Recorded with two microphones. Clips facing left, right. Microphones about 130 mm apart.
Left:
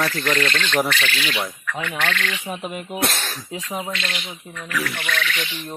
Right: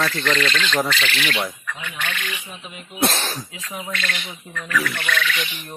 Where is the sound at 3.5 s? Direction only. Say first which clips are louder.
Left 5 dB; 35° left (ahead or behind).